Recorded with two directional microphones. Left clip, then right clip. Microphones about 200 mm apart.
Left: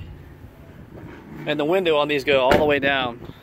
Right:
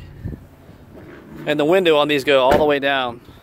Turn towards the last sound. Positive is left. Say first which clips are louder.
# right 2 dB
turn(degrees=-20)  # may be behind; listen again after turning